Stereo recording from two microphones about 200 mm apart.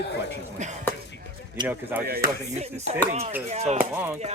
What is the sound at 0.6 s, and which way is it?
Speech, 35° right (ahead or behind).